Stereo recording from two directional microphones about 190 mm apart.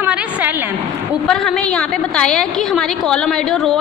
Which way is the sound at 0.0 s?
10° right (ahead or behind).